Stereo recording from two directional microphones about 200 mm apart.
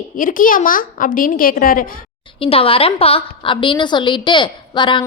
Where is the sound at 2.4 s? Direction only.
30° left (ahead or behind).